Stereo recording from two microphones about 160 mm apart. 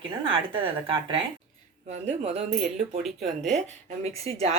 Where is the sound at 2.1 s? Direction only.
40° right (ahead or behind).